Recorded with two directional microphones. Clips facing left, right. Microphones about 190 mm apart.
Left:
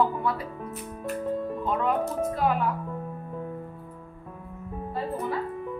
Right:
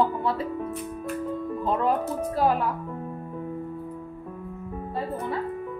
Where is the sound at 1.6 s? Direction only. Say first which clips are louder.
Right 3 dB; 35° right (ahead or behind).